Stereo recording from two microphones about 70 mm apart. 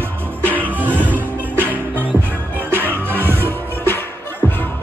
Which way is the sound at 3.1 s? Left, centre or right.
Right.